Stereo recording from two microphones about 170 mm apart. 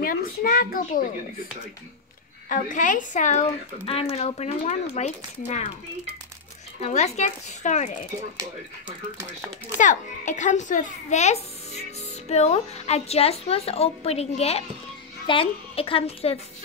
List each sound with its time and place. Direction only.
0.0 s a child's voice: 55° left (ahead or behind)
2.5 s speech: 50° left (ahead or behind)
6.8 s speech: 45° left (ahead or behind)
9.8 s a woman's voice: 50° left (ahead or behind)